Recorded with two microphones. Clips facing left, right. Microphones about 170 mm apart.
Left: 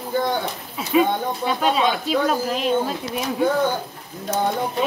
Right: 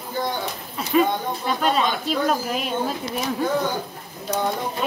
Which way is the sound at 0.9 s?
5° left (ahead or behind).